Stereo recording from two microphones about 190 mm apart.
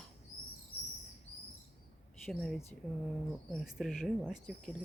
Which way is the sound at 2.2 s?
Centre (ahead or behind).